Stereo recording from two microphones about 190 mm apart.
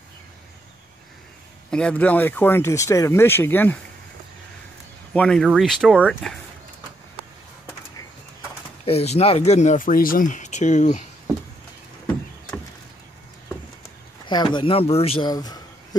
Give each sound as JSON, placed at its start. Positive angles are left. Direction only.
{"t": 1.7, "sound": "speech", "side_deg": 5}
{"t": 5.1, "sound": "speech", "side_deg": 5}
{"t": 8.8, "sound": "speech", "side_deg": 35}
{"t": 14.2, "sound": "a man's voice", "side_deg": 25}